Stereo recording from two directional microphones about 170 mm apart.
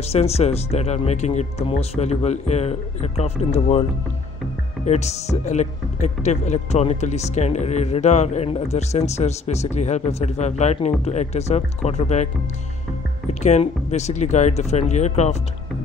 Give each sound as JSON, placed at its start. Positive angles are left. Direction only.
{"t": 0.0, "sound": "speech", "side_deg": 40}
{"t": 4.8, "sound": "speech", "side_deg": 40}
{"t": 13.3, "sound": "speech", "side_deg": 40}